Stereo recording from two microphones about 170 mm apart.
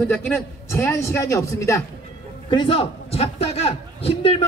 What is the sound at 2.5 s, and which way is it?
A man's voice, 30° left (ahead or behind).